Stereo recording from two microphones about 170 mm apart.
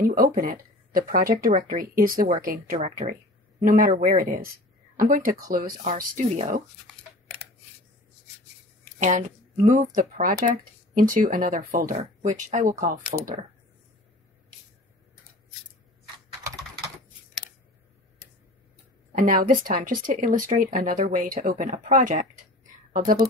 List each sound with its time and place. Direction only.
0.0 s speech: 55° right (ahead or behind)
8.9 s a sound: 45° right (ahead or behind)
9.7 s speech: 45° right (ahead or behind)
19.1 s speech: 55° right (ahead or behind)